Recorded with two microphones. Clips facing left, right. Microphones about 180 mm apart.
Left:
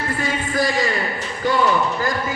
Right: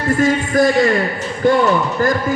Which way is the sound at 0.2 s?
45° right (ahead or behind).